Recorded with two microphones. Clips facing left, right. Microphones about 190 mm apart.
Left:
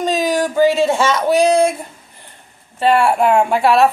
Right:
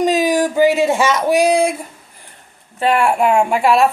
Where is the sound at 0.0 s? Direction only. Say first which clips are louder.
Right 2 dB; 15° right (ahead or behind).